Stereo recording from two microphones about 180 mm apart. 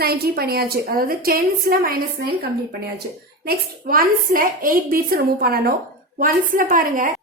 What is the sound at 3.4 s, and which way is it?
A woman's voice, 50° right (ahead or behind).